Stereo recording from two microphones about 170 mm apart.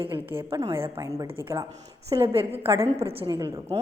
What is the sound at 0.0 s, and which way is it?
Speech, 30° right (ahead or behind).